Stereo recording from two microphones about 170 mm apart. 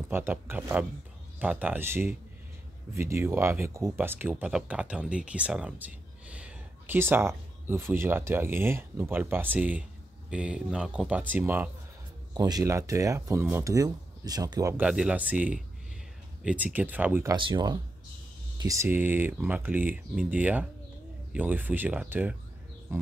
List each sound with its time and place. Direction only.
0.1 s speech: 15° right (ahead or behind)
12.4 s speech: 20° right (ahead or behind)
17.4 s speech: 25° right (ahead or behind); by 22.4 s 10° right (ahead or behind)